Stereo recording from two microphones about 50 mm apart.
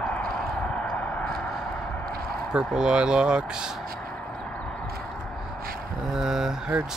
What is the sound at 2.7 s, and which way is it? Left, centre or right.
Speech, centre.